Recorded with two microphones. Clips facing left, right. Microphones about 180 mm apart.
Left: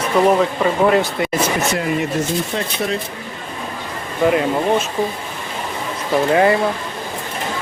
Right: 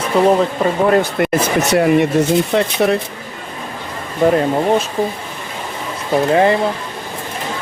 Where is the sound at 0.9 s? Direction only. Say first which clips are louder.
Right 3 dB; 55° right (ahead or behind).